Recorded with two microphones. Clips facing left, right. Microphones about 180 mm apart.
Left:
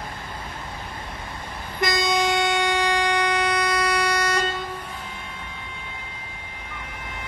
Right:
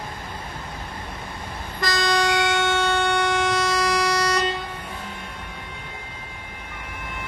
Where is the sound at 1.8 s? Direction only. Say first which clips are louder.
Left 1 dB; 20° left (ahead or behind).